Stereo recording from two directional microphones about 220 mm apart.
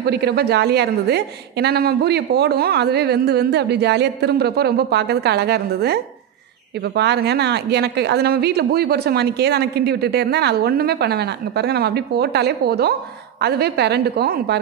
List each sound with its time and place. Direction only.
0.0 s a woman's voice: 50° right (ahead or behind)
7.0 s a woman's voice: 50° right (ahead or behind)